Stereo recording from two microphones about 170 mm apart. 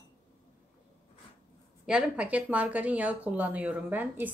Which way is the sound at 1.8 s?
5° right (ahead or behind).